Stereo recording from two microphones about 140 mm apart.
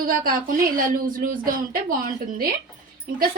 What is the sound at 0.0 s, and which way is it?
Speech, 85° right.